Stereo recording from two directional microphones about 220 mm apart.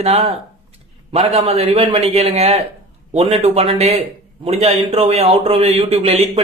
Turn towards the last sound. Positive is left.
turn(degrees=-25)  # may be behind; listen again after turning